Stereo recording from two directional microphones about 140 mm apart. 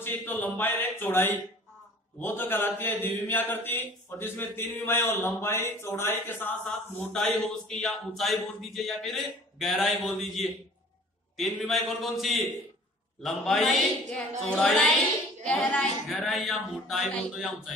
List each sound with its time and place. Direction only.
0.0 s mantra: 15° left (ahead or behind)
7.0 s a man's voice: 5° left (ahead or behind)